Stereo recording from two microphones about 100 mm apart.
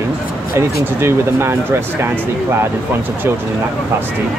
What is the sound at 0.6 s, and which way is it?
Speech, 25° right (ahead or behind).